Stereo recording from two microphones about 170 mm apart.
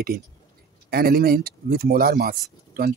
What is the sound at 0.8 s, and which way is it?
Speech, 60° right (ahead or behind).